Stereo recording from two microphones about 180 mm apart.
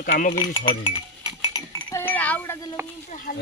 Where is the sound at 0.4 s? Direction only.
25° left (ahead or behind).